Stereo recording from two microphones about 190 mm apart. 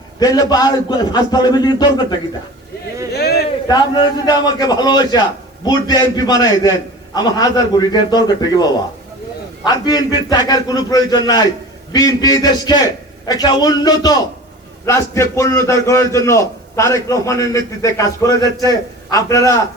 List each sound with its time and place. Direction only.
0.2 s a man's voice: 20° left (ahead or behind)
3.1 s a sound: 55° left (ahead or behind)
3.7 s a man's voice: 20° left (ahead or behind)